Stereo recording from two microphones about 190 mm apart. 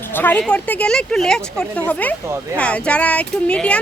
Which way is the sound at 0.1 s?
10° left (ahead or behind).